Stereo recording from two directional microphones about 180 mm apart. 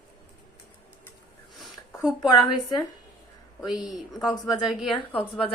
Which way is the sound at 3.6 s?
Centre (ahead or behind).